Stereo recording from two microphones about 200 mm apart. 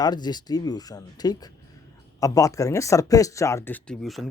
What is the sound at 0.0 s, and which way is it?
Speech, 20° left (ahead or behind).